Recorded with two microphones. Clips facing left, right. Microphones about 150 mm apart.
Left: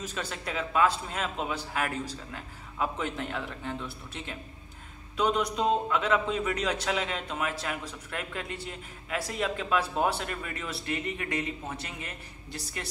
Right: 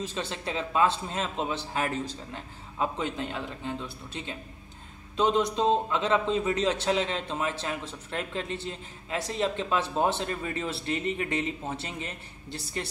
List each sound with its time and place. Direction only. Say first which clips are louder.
0.0 s a man's voice: right 3 dB; 25° right (ahead or behind)